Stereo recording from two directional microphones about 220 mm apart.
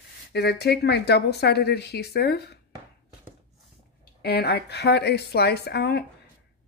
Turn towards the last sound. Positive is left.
turn(degrees=50)  # may be behind; listen again after turning